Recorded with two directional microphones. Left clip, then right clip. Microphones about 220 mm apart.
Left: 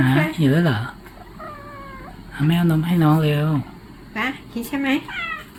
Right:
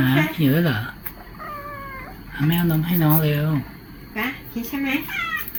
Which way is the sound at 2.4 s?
25° left (ahead or behind).